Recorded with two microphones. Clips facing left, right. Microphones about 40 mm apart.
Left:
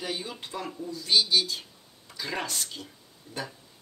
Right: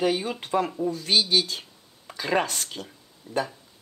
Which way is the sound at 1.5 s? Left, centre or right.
Right.